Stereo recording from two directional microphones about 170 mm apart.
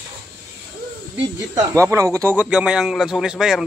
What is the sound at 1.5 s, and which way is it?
Speech, 20° right (ahead or behind).